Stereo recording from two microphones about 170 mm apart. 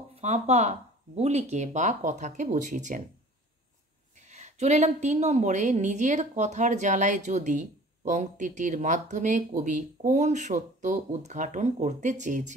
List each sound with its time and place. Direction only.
0.1 s a woman's voice: 40° right (ahead or behind)
4.3 s a woman's voice: 45° right (ahead or behind)